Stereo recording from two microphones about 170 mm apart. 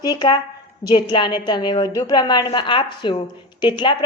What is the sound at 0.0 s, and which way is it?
A woman's voice, 25° left (ahead or behind).